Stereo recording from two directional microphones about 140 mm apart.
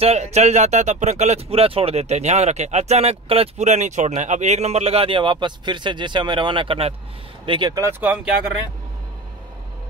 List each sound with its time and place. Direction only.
0.0 s speech: 50° right (ahead or behind); by 7.8 s 35° right (ahead or behind)
7.8 s speech: 15° right (ahead or behind)